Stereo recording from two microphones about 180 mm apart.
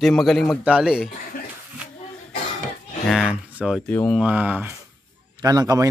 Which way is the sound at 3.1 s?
5° right (ahead or behind).